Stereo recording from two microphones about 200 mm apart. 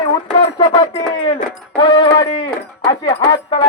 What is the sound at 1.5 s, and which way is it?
Music, 25° left (ahead or behind).